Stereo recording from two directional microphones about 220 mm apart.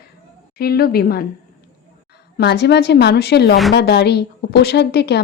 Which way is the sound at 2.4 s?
50° left (ahead or behind).